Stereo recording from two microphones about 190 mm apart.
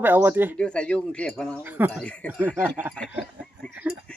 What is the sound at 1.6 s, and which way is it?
Speech, 10° right (ahead or behind).